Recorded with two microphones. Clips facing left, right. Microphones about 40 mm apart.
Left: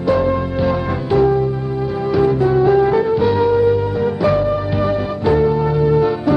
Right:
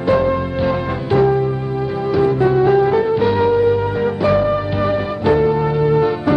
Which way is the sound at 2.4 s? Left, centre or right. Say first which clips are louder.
Even; centre.